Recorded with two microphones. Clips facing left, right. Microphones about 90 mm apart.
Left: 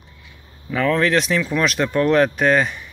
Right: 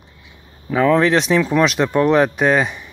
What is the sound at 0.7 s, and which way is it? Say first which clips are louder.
Speech: right 4 dB; 20° right (ahead or behind).